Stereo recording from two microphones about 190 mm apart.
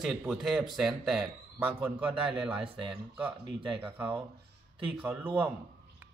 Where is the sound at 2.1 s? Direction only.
25° right (ahead or behind).